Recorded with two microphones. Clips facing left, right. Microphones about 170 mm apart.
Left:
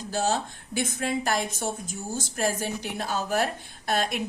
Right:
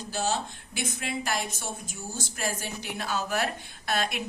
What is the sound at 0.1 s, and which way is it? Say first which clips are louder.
A woman's voice: left 3 dB; 45° left (ahead or behind).